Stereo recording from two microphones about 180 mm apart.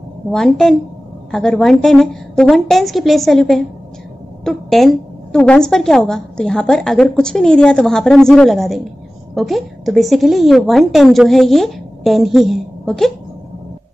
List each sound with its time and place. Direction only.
0.3 s a woman's voice: 5° left (ahead or behind)